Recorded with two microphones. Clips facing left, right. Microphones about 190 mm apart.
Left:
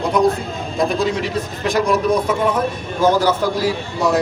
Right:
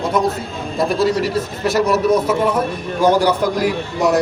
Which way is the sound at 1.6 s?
5° right (ahead or behind).